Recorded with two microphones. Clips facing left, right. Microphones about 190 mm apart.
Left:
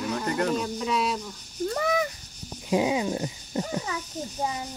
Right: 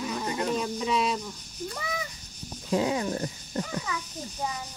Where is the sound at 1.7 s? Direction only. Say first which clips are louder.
Left 11 dB; 60° left (ahead or behind).